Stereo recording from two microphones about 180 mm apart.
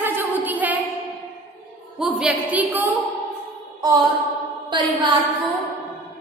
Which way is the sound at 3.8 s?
25° right (ahead or behind).